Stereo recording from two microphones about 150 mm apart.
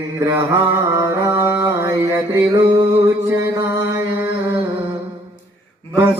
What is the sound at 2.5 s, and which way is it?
Music, 25° right (ahead or behind).